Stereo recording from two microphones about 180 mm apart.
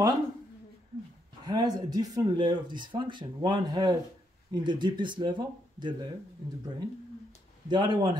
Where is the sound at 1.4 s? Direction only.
20° right (ahead or behind).